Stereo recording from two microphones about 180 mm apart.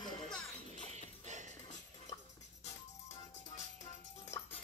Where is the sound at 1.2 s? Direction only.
40° right (ahead or behind).